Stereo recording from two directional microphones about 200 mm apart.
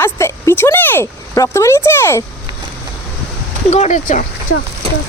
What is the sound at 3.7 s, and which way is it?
Speech, 35° left (ahead or behind).